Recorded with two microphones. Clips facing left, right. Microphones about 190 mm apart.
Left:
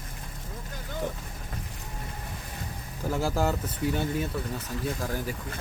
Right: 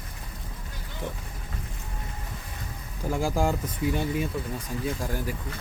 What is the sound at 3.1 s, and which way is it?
Speech, 15° right (ahead or behind).